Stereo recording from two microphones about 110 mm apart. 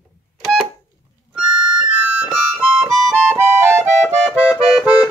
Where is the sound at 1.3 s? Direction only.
10° right (ahead or behind).